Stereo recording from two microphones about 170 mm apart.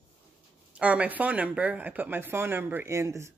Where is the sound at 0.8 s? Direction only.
10° right (ahead or behind).